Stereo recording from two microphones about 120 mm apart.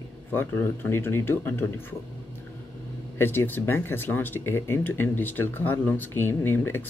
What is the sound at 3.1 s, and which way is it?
Speech, 20° left (ahead or behind).